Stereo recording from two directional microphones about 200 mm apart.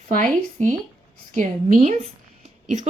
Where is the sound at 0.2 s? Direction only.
40° right (ahead or behind).